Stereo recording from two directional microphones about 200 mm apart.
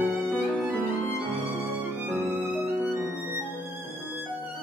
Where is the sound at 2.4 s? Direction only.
10° right (ahead or behind).